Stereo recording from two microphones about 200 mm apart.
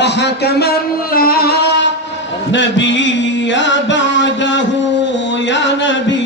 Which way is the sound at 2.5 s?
65° left (ahead or behind).